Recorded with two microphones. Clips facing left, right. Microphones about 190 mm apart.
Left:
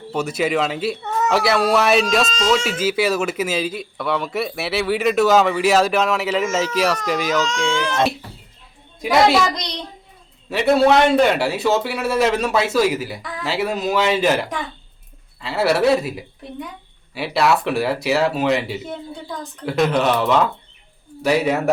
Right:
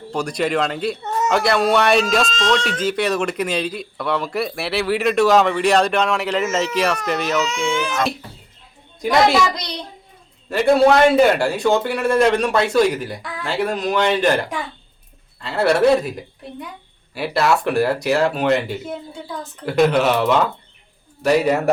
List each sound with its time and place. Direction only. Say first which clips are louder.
0.1 s speech: even; 5° left (ahead or behind)
7.3 s speech: even; 10° right (ahead or behind)
9.0 s a woman's voice: even; centre (ahead or behind)
10.5 s speech: right 1 dB; centre (ahead or behind)